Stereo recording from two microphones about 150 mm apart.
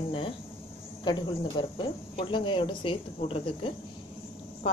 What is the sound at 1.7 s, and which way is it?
A woman's voice, 35° left (ahead or behind).